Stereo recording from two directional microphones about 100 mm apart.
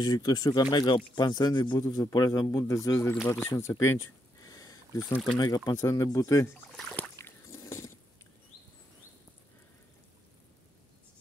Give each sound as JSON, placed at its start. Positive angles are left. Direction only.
{"t": 0.0, "sound": "speech", "side_deg": 40}
{"t": 1.8, "sound": "speech", "side_deg": 35}
{"t": 6.9, "sound": "a sound", "side_deg": 20}